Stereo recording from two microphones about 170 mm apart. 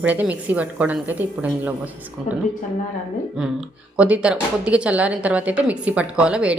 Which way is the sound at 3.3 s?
5° right (ahead or behind).